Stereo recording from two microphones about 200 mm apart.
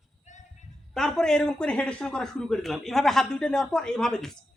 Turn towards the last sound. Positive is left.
turn(degrees=0)  # may be behind; listen again after turning